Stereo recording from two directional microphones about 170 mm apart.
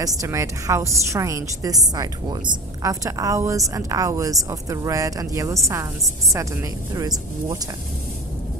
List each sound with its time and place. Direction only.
0.0 s a woman's voice: 20° right (ahead or behind)